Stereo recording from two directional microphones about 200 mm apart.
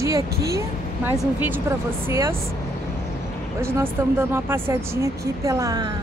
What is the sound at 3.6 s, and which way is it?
Speech, 15° right (ahead or behind).